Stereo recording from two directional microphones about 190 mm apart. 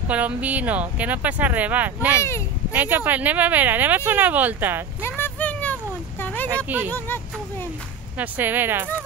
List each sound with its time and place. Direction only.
0.1 s speech: 10° right (ahead or behind)
5.0 s a sound: 10° left (ahead or behind)
6.5 s speech: 10° right (ahead or behind)
8.2 s speech: 10° right (ahead or behind)